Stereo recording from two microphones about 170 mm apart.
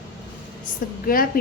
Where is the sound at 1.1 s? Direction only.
55° left (ahead or behind).